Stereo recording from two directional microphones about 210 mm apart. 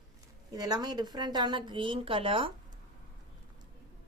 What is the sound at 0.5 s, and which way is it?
A woman's voice, 20° right (ahead or behind).